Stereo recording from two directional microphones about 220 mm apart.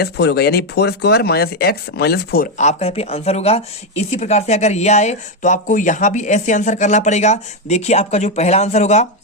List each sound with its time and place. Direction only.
0.0 s speech: 50° left (ahead or behind); by 9.0 s 30° left (ahead or behind)